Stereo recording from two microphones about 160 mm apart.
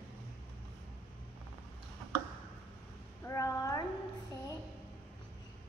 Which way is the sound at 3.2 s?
20° left (ahead or behind).